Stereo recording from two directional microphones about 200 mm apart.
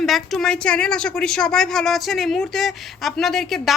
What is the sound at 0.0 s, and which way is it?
A woman's voice, centre (ahead or behind).